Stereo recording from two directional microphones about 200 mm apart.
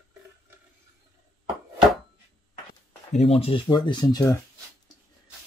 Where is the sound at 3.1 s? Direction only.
30° left (ahead or behind).